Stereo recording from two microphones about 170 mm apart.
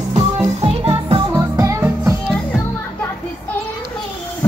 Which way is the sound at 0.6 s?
30° right (ahead or behind).